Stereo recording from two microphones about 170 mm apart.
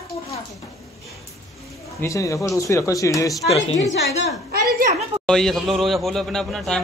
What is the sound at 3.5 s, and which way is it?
Speech, 40° left (ahead or behind).